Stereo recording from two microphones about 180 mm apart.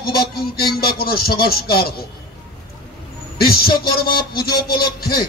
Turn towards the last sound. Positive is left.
turn(degrees=55)  # may be behind; listen again after turning